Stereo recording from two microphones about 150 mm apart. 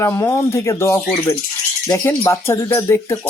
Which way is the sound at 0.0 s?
20° left (ahead or behind).